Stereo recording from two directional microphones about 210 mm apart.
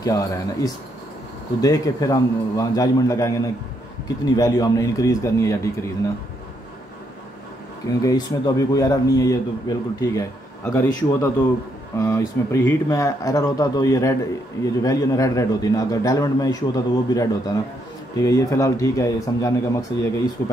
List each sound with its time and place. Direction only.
0.0 s a man's voice: 15° left (ahead or behind)
8.0 s a man's voice: 20° left (ahead or behind)